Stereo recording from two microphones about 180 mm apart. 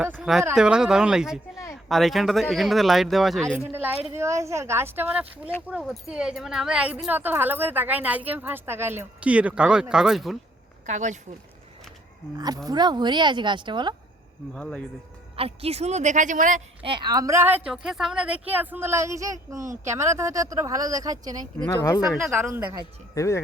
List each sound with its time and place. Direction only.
0.0 s speech: 5° right (ahead or behind)
3.7 s speech: 10° right (ahead or behind)
10.8 s a woman's voice: 40° right (ahead or behind)
12.6 s speech: 25° right (ahead or behind)
14.5 s speech: 5° left (ahead or behind)
15.4 s a woman's voice: 35° right (ahead or behind)
16.8 s speech: 25° right (ahead or behind)
21.7 s speech: 20° left (ahead or behind)
22.4 s speech: 10° right (ahead or behind)
22.8 s speech: 15° left (ahead or behind)